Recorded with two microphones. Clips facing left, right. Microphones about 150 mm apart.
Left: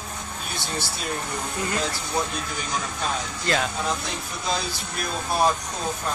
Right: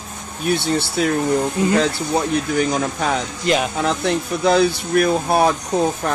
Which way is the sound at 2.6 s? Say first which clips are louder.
Right 10 dB; 75° right (ahead or behind).